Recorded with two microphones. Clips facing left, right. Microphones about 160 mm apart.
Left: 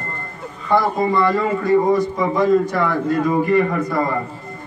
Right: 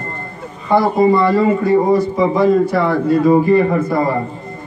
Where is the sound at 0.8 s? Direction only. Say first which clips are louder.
Right 8 dB; 30° right (ahead or behind).